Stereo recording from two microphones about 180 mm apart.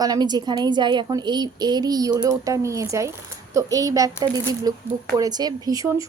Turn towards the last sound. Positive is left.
turn(degrees=-20)  # may be behind; listen again after turning